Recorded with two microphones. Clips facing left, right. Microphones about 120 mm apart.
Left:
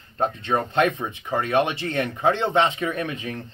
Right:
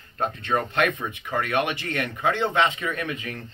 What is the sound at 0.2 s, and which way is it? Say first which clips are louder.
Speech: left 2 dB; 25° left (ahead or behind).